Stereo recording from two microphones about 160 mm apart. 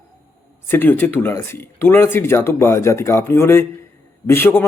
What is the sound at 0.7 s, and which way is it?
Speech, 10° left (ahead or behind).